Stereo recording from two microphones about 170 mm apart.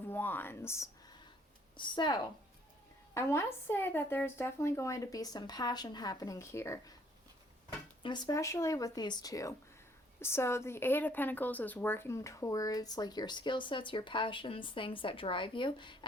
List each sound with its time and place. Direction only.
0.1 s a woman's voice: 10° left (ahead or behind)
1.7 s speech: 25° left (ahead or behind)
3.2 s a woman's voice: 15° left (ahead or behind)
8.0 s speech: 25° left (ahead or behind)